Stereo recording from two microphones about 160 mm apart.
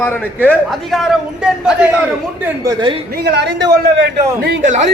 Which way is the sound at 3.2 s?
90° right.